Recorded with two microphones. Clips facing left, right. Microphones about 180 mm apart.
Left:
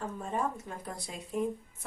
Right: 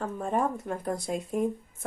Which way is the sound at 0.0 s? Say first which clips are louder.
Right 5 dB; 55° right (ahead or behind).